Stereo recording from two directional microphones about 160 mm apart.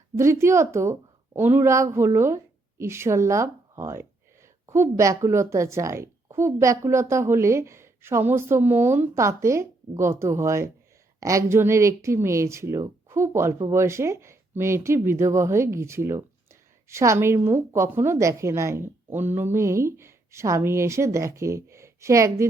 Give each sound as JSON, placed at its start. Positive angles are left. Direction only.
{"t": 0.2, "sound": "a woman's voice", "side_deg": -15}